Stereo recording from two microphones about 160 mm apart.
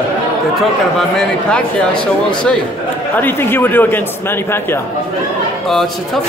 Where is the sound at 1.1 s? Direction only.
5° left (ahead or behind).